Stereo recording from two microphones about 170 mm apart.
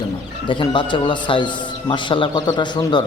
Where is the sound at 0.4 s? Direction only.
30° left (ahead or behind).